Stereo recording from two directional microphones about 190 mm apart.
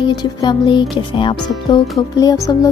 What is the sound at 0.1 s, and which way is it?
Speech, 20° left (ahead or behind).